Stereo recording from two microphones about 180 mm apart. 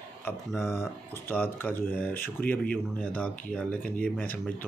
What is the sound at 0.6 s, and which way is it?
Speech, 15° left (ahead or behind).